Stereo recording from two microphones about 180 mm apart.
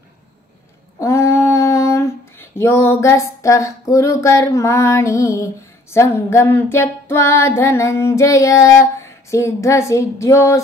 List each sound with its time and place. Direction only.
0.9 s female singing: 15° left (ahead or behind)